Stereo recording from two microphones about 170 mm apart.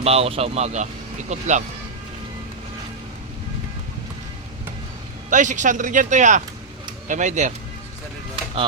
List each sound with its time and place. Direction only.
0.0 s speech: 35° right (ahead or behind)
5.3 s speech: 45° right (ahead or behind)